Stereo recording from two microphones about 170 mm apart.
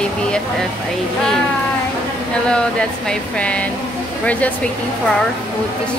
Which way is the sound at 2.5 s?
5° left (ahead or behind).